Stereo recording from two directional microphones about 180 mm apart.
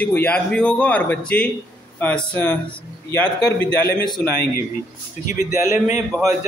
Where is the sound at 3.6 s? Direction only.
15° left (ahead or behind).